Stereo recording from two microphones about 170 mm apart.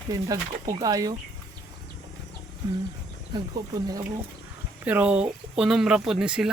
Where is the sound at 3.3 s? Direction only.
25° right (ahead or behind).